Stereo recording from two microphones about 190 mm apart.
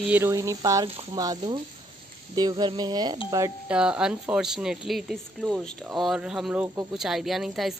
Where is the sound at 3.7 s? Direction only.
5° right (ahead or behind).